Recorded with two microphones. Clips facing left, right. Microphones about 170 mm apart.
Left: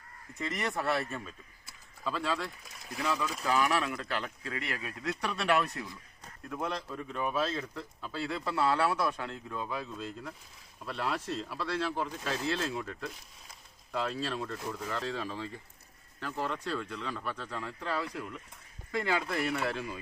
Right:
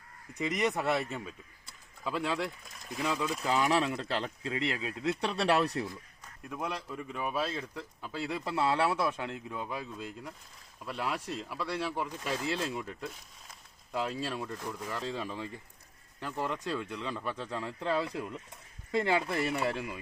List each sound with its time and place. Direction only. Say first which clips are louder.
0.3 s speech: right 4 dB; 15° right (ahead or behind)
2.6 s speech: right 1 dB; centre (ahead or behind)
3.0 s speech: right 1 dB; 20° right (ahead or behind); by 5.9 s 35° right (ahead or behind)
6.5 s speech: left 1 dB; 10° right (ahead or behind)